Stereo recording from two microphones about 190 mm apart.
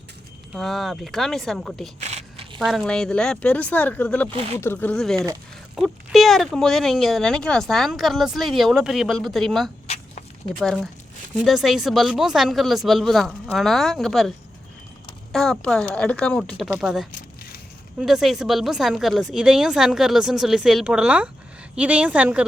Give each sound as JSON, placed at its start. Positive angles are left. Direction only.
{"t": 0.5, "sound": "speech", "side_deg": 0}
{"t": 2.0, "sound": "a sound", "side_deg": -35}
{"t": 2.6, "sound": "speech", "side_deg": 0}
{"t": 4.3, "sound": "speech", "side_deg": -30}
{"t": 4.5, "sound": "speech", "side_deg": 10}
{"t": 9.8, "sound": "walk", "side_deg": 35}
{"t": 10.6, "sound": "a woman's voice", "side_deg": 0}